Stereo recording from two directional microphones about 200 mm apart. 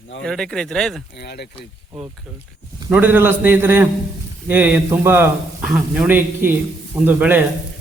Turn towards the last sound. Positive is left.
turn(degrees=-10)  # may be behind; listen again after turning